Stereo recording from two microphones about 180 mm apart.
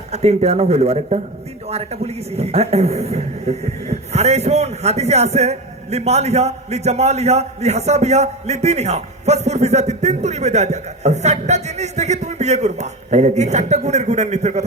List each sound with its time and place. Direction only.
0.1 s a man's voice: 35° right (ahead or behind)